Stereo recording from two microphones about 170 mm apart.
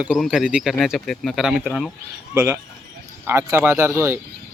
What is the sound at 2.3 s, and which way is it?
Speech, 15° right (ahead or behind).